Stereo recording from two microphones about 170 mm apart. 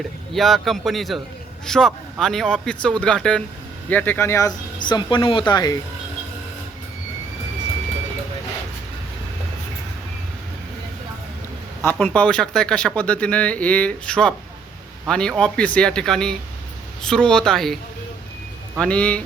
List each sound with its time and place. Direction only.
0.3 s speech: centre (ahead or behind); by 5.7 s 25° left (ahead or behind)
11.8 s speech: 10° left (ahead or behind)
18.8 s speech: 5° left (ahead or behind)